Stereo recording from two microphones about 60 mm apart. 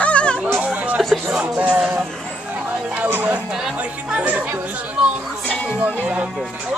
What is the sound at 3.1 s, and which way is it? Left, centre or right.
Speech, right.